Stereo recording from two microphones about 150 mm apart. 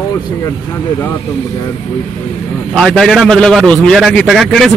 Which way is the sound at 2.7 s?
Centre (ahead or behind).